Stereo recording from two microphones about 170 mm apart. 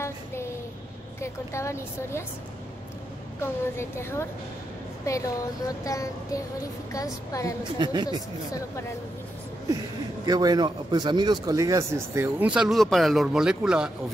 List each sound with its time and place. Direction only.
1.2 s a woman's voice: 15° left (ahead or behind)
3.3 s a woman's voice: 15° left (ahead or behind)
7.8 s speech: 25° right (ahead or behind)
10.2 s a man's voice: 25° right (ahead or behind); by 13.9 s 5° right (ahead or behind)